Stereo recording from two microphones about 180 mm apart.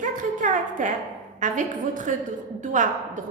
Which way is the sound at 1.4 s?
45° right (ahead or behind).